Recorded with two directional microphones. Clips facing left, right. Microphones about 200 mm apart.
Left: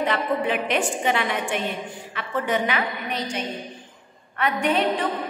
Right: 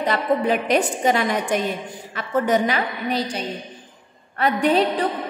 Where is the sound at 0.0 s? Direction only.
40° right (ahead or behind).